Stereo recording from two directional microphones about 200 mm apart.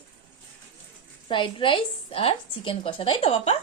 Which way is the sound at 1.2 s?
25° left (ahead or behind).